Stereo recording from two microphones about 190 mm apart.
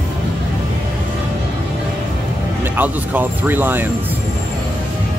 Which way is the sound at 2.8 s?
10° right (ahead or behind).